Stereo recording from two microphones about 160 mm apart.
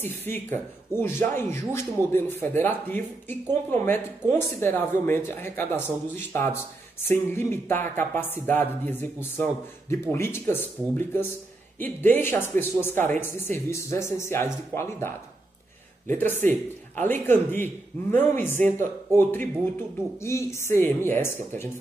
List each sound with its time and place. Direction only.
0.0 s speech: 15° left (ahead or behind)